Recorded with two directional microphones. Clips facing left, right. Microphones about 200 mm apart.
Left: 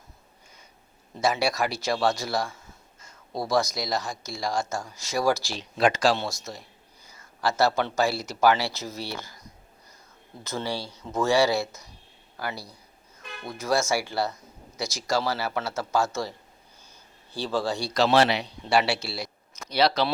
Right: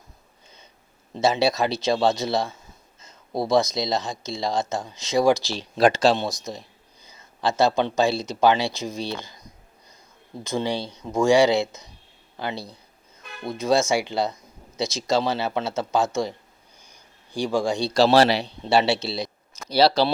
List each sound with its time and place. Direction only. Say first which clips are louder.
1.1 s speech: right 4 dB; 25° right (ahead or behind)
5.5 s speech: right 4 dB; 35° right (ahead or behind)
6.0 s speech: right 4 dB; 20° right (ahead or behind)
10.4 s speech: right 5 dB; 15° right (ahead or behind)
16.8 s a sound: even; 15° right (ahead or behind)
17.9 s speech: right 4 dB; 35° right (ahead or behind)
18.6 s speech: right 3 dB; 25° right (ahead or behind)
19.6 s speech: right 5 dB; 30° right (ahead or behind)